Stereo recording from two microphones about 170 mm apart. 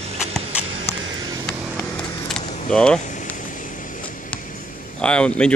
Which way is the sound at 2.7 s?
5° left (ahead or behind).